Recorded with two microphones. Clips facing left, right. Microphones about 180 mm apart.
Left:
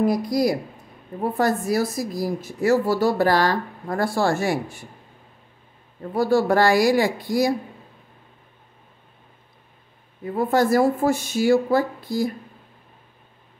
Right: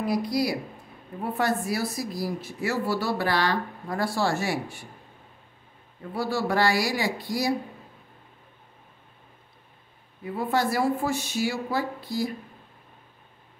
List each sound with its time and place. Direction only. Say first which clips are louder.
0.0 s a woman's voice: left 5 dB; 45° left (ahead or behind)
6.1 s a woman's voice: left 7 dB; 50° left (ahead or behind)
10.2 s a woman's voice: left 6 dB; 45° left (ahead or behind)